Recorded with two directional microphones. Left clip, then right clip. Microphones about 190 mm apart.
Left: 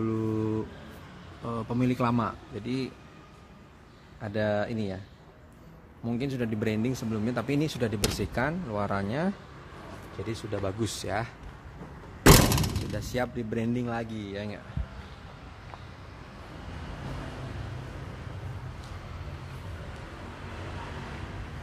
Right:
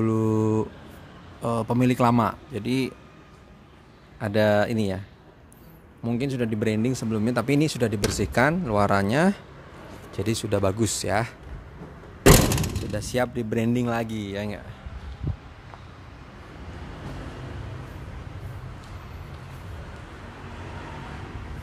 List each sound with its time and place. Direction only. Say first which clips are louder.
0.0 s a sound: right 6 dB; 50° right (ahead or behind)
1.4 s a man's voice: right 7 dB; 45° right (ahead or behind)
4.2 s speech: right 8 dB; 40° right (ahead or behind)
6.0 s speech: right 5 dB; 25° right (ahead or behind)
10.2 s speech: right 9 dB; 50° right (ahead or behind)
10.8 s speech: right 7 dB; 30° right (ahead or behind)
12.9 s speech: right 7 dB; 25° right (ahead or behind)